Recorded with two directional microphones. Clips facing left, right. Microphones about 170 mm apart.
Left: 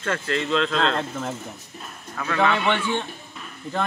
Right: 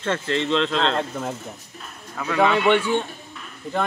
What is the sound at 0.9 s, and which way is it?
A man's voice, 15° right (ahead or behind).